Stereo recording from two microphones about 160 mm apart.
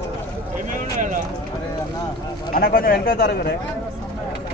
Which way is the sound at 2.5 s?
65° left (ahead or behind).